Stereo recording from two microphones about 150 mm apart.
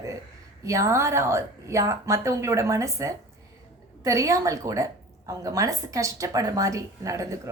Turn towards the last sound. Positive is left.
turn(degrees=-20)  # may be behind; listen again after turning